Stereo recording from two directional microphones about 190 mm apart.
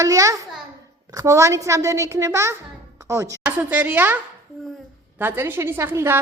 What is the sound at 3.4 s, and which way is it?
A woman's voice, 5° right (ahead or behind).